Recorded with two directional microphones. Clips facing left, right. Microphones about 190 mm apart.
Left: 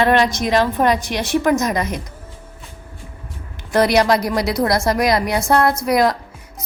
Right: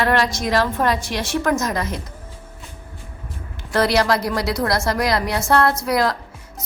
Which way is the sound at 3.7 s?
15° left (ahead or behind).